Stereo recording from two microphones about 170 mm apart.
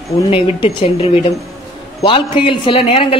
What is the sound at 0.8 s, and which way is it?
A woman's voice, 35° left (ahead or behind).